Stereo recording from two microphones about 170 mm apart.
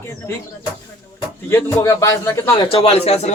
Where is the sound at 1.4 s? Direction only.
15° left (ahead or behind).